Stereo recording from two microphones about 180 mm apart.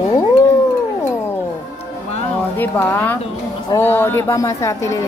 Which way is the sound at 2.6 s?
10° left (ahead or behind).